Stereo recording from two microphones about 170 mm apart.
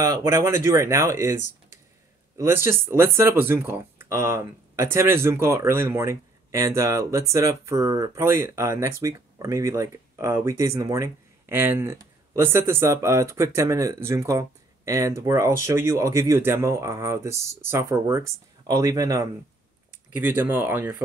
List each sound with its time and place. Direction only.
0.2 s speech: 15° right (ahead or behind)
2.3 s speech: 15° right (ahead or behind)